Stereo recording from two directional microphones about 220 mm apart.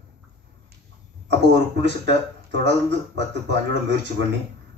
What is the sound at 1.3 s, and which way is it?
Speech, 50° right (ahead or behind).